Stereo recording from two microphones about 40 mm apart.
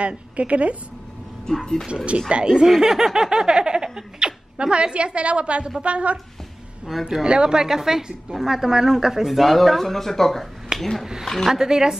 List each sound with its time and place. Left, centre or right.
0.0 s a woman's voice: right
1.5 s speech: centre
1.9 s speech: right
2.8 s a woman's voice: centre; by 6.1 s right
7.2 s a woman's voice: right; by 11.1 s centre
11.4 s a woman's voice: centre